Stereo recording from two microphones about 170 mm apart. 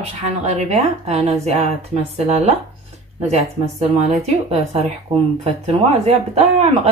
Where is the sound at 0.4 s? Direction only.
40° right (ahead or behind).